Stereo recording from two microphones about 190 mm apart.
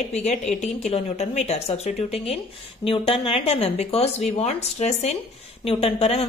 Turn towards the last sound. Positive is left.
turn(degrees=30)  # may be behind; listen again after turning